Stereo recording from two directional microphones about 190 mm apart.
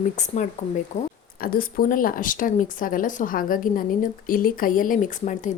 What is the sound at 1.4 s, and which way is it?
Speech, 50° left (ahead or behind).